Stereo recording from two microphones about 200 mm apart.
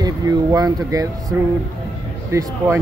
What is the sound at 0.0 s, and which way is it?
Speech, 20° right (ahead or behind).